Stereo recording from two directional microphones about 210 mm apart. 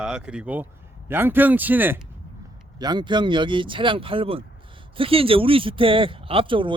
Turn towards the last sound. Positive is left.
turn(degrees=-25)  # may be behind; listen again after turning